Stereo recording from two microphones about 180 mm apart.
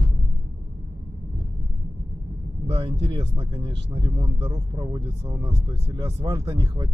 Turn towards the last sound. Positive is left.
turn(degrees=-20)  # may be behind; listen again after turning